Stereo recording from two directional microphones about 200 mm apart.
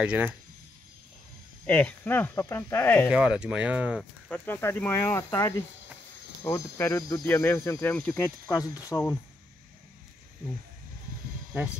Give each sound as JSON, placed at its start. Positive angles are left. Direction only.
{"t": 0.0, "sound": "speech", "side_deg": -5}
{"t": 1.7, "sound": "speech", "side_deg": 10}
{"t": 3.1, "sound": "speech", "side_deg": -5}
{"t": 4.3, "sound": "speech", "side_deg": 10}